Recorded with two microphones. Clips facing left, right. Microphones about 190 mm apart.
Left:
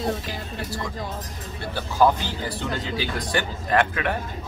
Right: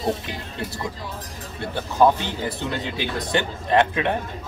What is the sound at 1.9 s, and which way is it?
A man's voice, 20° right (ahead or behind).